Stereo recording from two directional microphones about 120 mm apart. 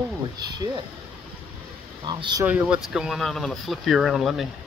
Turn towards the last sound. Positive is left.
turn(degrees=0)  # may be behind; listen again after turning